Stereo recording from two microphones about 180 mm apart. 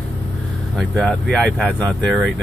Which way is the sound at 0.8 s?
5° left (ahead or behind).